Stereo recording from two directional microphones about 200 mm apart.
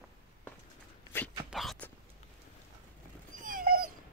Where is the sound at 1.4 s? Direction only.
Centre (ahead or behind).